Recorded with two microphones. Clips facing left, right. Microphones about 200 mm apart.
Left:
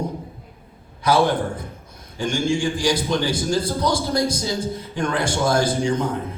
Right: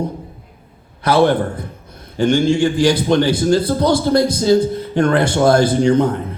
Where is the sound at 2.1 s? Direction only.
60° right (ahead or behind).